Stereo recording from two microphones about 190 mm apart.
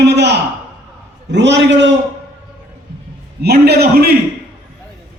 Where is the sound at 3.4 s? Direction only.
55° right (ahead or behind).